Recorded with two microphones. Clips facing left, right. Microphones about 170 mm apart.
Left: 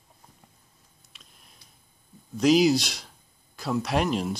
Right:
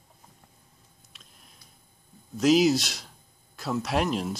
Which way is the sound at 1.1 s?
Centre (ahead or behind).